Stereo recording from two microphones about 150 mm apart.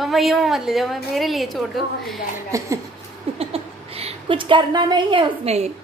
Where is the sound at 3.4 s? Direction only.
40° right (ahead or behind).